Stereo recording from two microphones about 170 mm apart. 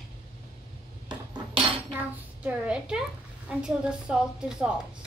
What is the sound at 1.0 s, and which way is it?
Dishes, 25° right (ahead or behind).